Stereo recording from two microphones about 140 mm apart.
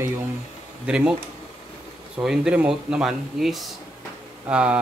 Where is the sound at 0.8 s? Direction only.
5° right (ahead or behind).